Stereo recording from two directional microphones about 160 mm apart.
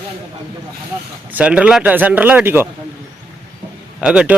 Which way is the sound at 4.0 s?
5° right (ahead or behind).